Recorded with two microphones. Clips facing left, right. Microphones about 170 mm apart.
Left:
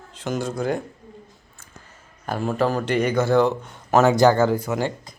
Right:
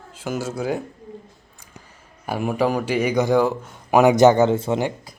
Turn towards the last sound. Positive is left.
turn(degrees=-25)  # may be behind; listen again after turning